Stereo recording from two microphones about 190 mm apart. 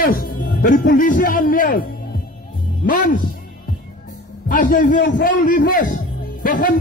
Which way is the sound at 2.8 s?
45° left (ahead or behind).